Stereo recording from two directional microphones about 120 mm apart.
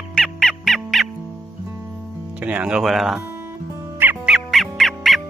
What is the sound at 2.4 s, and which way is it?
Music, 10° right (ahead or behind).